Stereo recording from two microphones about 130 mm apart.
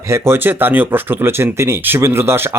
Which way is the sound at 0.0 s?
20° right (ahead or behind).